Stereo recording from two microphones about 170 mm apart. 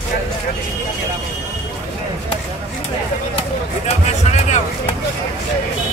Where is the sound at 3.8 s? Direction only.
40° left (ahead or behind).